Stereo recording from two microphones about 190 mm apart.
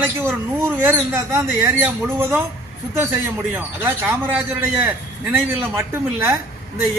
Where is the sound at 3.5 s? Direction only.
10° right (ahead or behind).